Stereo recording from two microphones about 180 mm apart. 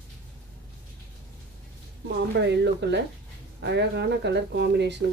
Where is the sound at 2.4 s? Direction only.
70° right (ahead or behind).